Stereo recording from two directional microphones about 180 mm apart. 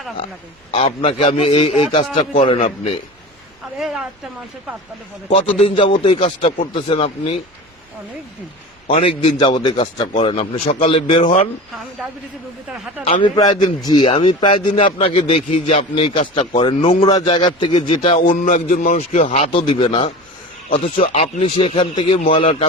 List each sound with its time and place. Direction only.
0.7 s a man's voice: 30° left (ahead or behind)
3.8 s speech: centre (ahead or behind)
5.3 s a man's voice: 30° left (ahead or behind)
8.9 s a man's voice: 30° left (ahead or behind)
12.7 s speech: 5° right (ahead or behind)
13.2 s a man's voice: 25° left (ahead or behind)
18.3 s a man's voice: 45° left (ahead or behind); by 20.1 s 30° left (ahead or behind)
20.9 s a man's voice: 45° left (ahead or behind)